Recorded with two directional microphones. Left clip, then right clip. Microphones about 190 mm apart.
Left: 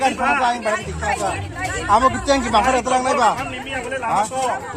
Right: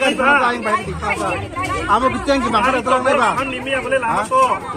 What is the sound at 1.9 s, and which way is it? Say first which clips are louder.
A man's voice: left 1 dB; 70° left (ahead or behind).